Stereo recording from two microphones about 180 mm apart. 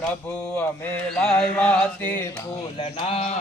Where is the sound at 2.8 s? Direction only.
35° left (ahead or behind).